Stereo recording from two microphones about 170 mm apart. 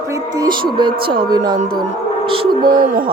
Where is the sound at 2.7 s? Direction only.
55° right (ahead or behind).